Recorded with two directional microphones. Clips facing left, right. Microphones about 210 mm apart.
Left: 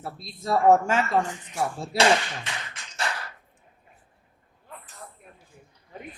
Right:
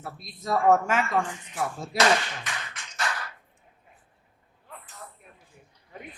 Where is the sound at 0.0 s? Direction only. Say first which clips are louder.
Left 2 dB; 30° left (ahead or behind).